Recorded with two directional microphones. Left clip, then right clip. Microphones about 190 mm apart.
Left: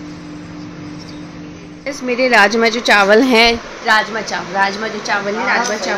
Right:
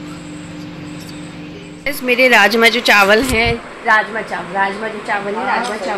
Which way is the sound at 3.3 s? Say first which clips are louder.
Left 5 dB; 45° left (ahead or behind).